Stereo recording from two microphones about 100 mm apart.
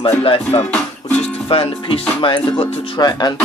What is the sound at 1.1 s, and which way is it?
Music, 80° left.